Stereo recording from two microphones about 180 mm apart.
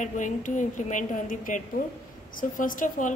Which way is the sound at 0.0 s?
45° left (ahead or behind).